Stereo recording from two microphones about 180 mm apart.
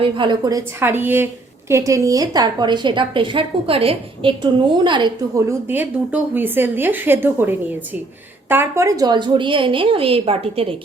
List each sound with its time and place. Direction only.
0.0 s a woman's voice: 25° right (ahead or behind)